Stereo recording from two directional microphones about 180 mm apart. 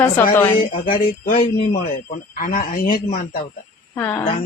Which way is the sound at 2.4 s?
50° left (ahead or behind).